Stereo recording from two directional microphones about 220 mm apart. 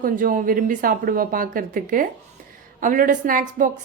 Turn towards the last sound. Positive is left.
turn(degrees=-40)  # may be behind; listen again after turning